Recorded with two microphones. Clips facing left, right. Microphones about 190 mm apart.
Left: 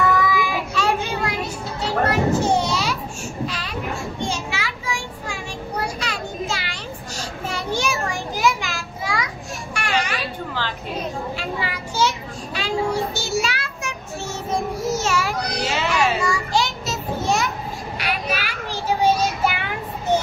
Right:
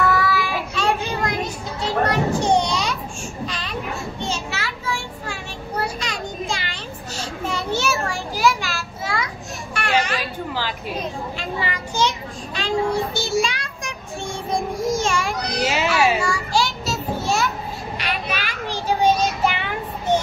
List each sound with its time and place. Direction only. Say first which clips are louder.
0.2 s child singing: left 1 dB; 15° left (ahead or behind)
2.0 s children playing: left 1 dB; 5° left (ahead or behind)
3.4 s a sound: left 1 dB; 10° left (ahead or behind)
4.2 s child singing: left 1 dB; 10° left (ahead or behind)
7.4 s a sound: right 1 dB; 10° left (ahead or behind)
9.8 s children playing: right 3 dB; 10° left (ahead or behind)
11.3 s children playing: even; 10° left (ahead or behind)
12.5 s child singing: right 1 dB; 10° left (ahead or behind)
14.8 s a sound: right 1 dB; 5° left (ahead or behind)
15.6 s children playing: right 3 dB; 15° right (ahead or behind)
16.3 s a sound: even; 20° left (ahead or behind)
17.9 s children playing: left 2 dB; 10° left (ahead or behind)